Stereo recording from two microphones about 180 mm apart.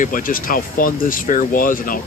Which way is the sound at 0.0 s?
50° left (ahead or behind).